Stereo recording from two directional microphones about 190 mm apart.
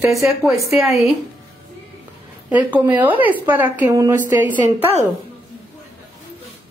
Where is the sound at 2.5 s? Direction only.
10° right (ahead or behind).